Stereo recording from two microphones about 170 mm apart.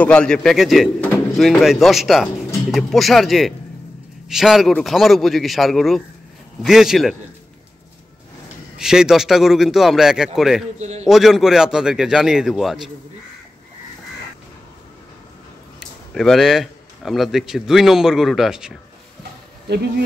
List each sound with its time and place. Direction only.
0.0 s a man's voice: 5° left (ahead or behind)
8.7 s a man's voice: 5° right (ahead or behind)
10.8 s a man's voice: 40° right (ahead or behind)
11.1 s a man's voice: centre (ahead or behind)
15.8 s a man's voice: centre (ahead or behind)